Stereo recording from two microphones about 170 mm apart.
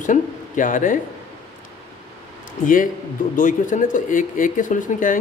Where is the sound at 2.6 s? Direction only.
50° left (ahead or behind).